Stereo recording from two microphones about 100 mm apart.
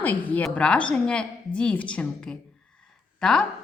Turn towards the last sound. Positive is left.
turn(degrees=5)  # may be behind; listen again after turning